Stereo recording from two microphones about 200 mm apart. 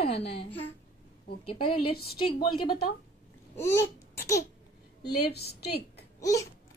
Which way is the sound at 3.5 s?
15° left (ahead or behind).